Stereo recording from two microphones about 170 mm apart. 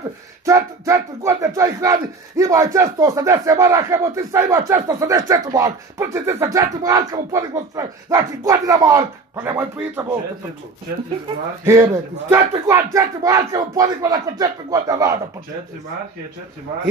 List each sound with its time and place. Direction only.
0.5 s speech: 20° right (ahead or behind)
11.6 s speech: 15° right (ahead or behind)